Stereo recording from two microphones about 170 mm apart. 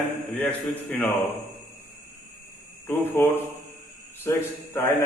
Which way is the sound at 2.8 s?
10° left (ahead or behind).